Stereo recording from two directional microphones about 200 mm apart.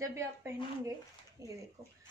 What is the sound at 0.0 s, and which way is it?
A woman's voice, 15° right (ahead or behind).